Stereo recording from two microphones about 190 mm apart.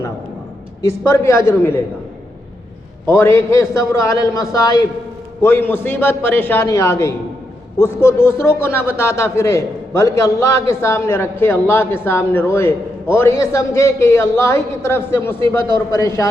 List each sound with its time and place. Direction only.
1.1 s a man's voice: 15° left (ahead or behind)
3.1 s a man's voice: 15° left (ahead or behind)